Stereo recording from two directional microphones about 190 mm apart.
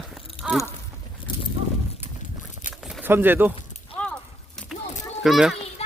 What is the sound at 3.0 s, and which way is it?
Speech, 10° right (ahead or behind).